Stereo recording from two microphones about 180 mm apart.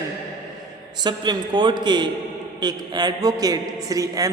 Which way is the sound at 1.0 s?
25° right (ahead or behind).